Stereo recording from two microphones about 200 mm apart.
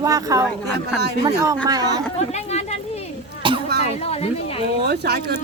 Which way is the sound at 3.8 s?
30° left (ahead or behind).